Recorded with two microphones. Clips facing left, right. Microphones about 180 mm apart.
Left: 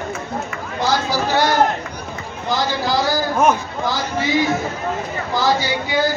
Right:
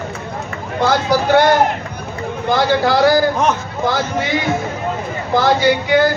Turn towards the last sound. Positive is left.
turn(degrees=-60)  # may be behind; listen again after turning